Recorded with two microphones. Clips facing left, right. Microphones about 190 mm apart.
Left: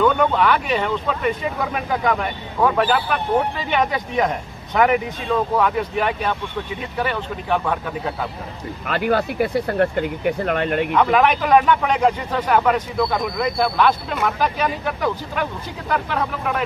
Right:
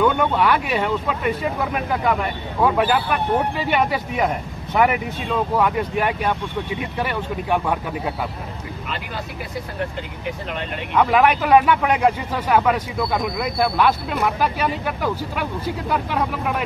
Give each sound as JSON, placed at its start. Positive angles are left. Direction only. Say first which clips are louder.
{"t": 0.0, "sound": "speech", "louder": "left 1 dB", "side_deg": -5}
{"t": 8.8, "sound": "speech", "louder": "left 13 dB", "side_deg": 65}
{"t": 11.0, "sound": "speech", "louder": "right 2 dB", "side_deg": -10}